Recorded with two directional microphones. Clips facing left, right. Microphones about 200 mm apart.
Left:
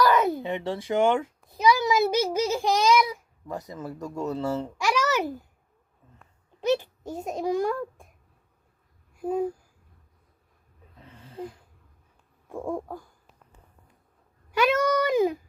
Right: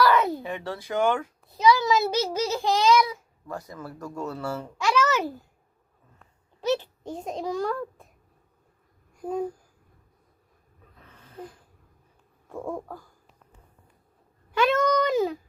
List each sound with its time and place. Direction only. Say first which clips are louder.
0.0 s a child's voice: even; 15° left (ahead or behind)
6.6 s a child's voice: left 1 dB; 15° left (ahead or behind)
9.1 s a sound: left 2 dB; 5° left (ahead or behind)
11.0 s a sound: left 4 dB; 20° left (ahead or behind)
12.5 s speech: left 2 dB; 15° left (ahead or behind)
14.6 s speech: even; 10° left (ahead or behind)